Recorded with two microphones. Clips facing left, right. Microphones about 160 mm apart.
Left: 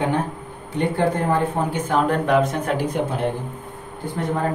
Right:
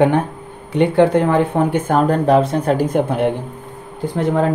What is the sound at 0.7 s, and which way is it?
Speech, 80° right.